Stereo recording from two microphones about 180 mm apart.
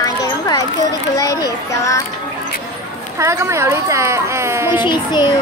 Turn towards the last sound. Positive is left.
turn(degrees=25)  # may be behind; listen again after turning